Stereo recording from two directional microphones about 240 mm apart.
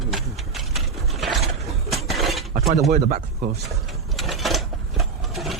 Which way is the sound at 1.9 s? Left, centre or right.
Centre.